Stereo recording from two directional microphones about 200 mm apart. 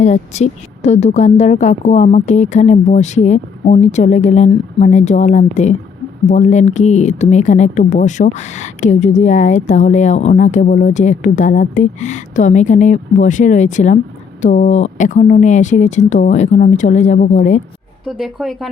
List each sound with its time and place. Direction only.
0.0 s speech: 35° left (ahead or behind)
18.0 s speech: centre (ahead or behind)